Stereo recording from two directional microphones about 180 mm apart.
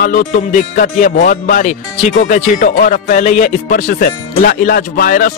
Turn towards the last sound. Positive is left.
turn(degrees=50)  # may be behind; listen again after turning